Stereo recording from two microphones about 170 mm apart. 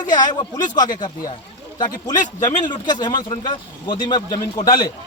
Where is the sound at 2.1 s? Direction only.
50° left (ahead or behind).